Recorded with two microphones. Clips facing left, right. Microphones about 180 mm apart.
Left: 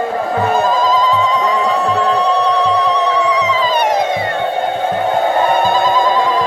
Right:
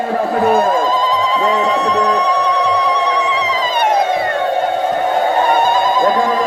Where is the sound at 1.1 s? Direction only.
30° right (ahead or behind).